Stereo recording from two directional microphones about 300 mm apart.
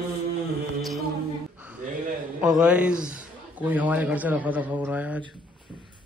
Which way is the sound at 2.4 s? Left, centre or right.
Centre.